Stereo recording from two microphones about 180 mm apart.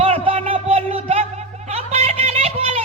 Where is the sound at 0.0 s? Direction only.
30° right (ahead or behind).